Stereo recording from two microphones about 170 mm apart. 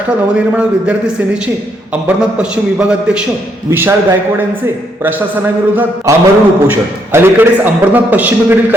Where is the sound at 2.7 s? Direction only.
5° right (ahead or behind).